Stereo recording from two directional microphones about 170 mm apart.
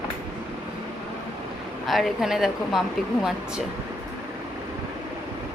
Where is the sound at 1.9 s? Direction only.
Centre (ahead or behind).